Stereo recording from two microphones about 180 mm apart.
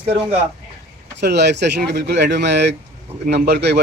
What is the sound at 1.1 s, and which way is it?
Speech, 70° right (ahead or behind).